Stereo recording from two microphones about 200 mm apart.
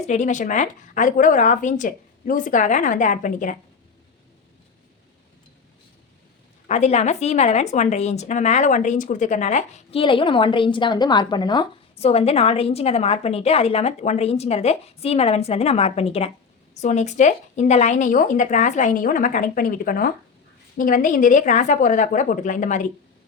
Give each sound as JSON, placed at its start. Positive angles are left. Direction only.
{"t": 0.1, "sound": "a woman's voice", "side_deg": 35}
{"t": 6.7, "sound": "a woman's voice", "side_deg": 35}